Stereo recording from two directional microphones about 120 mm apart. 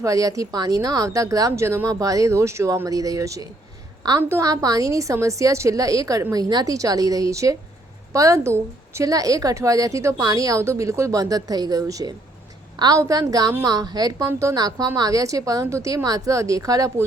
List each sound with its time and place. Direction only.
0.0 s a woman's voice: 30° right (ahead or behind)